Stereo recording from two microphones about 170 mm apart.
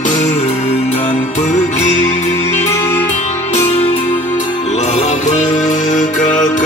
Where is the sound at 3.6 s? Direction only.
35° left (ahead or behind).